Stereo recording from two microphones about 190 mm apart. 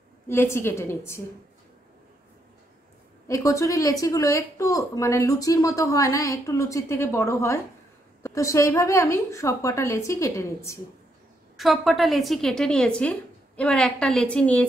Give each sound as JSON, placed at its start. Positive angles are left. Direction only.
{"t": 0.3, "sound": "speech", "side_deg": 15}
{"t": 3.3, "sound": "speech", "side_deg": 15}
{"t": 11.5, "sound": "a woman's voice", "side_deg": 0}